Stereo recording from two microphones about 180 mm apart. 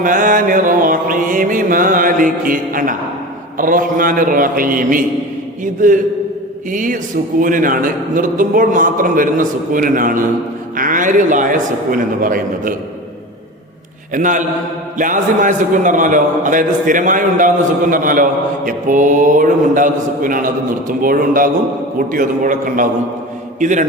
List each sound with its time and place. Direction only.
0.0 s mantra: 50° right (ahead or behind)
3.6 s a man's voice: 50° right (ahead or behind)
14.1 s a man's voice: 45° right (ahead or behind)